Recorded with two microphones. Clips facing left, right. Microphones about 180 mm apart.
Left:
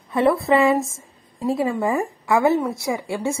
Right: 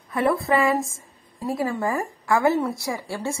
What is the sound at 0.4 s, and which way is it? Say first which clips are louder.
A woman's voice: left 4 dB; 25° left (ahead or behind).